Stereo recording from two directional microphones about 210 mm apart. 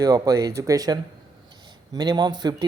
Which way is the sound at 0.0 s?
15° right (ahead or behind).